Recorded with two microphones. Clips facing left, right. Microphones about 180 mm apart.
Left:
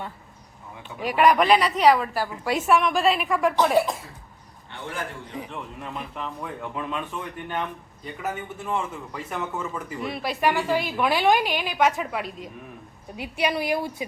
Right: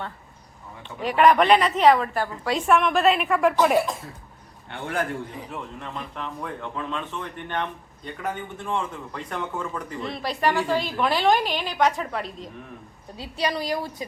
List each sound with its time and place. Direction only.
0.9 s a woman's voice: 10° left (ahead or behind); by 3.8 s 10° right (ahead or behind)
4.7 s a man's voice: 65° right (ahead or behind)
5.8 s a woman's voice: 5° left (ahead or behind)